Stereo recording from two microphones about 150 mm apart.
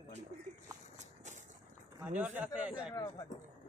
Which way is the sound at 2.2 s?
10° right (ahead or behind).